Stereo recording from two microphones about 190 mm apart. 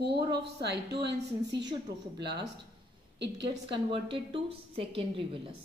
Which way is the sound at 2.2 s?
60° right (ahead or behind).